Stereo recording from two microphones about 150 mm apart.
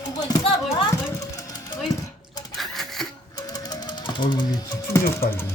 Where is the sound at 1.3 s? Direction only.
20° left (ahead or behind).